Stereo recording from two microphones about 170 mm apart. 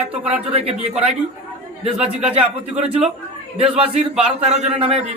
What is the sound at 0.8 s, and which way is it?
Speech, 40° right (ahead or behind).